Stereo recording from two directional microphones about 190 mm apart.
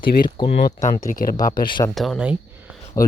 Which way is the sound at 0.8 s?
40° left (ahead or behind).